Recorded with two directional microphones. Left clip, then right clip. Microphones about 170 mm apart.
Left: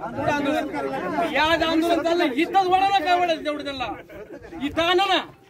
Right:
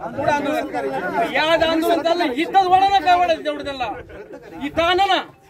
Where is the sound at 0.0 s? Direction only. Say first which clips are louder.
Right 4 dB; 5° right (ahead or behind).